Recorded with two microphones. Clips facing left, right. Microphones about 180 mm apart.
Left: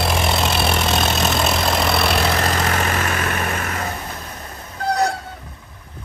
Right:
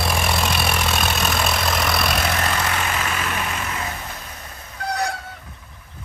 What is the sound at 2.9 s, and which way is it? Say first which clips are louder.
Vehicle: left 3 dB; 50° left (ahead or behind).